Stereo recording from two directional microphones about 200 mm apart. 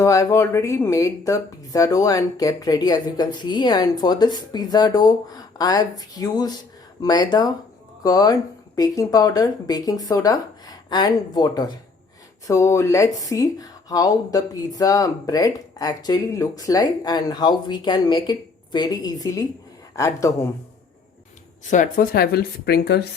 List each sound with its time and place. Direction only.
0.0 s speech: 15° left (ahead or behind)
21.6 s a woman's voice: 40° left (ahead or behind)